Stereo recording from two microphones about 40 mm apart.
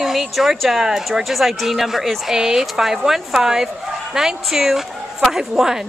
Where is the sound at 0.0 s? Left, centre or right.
Centre.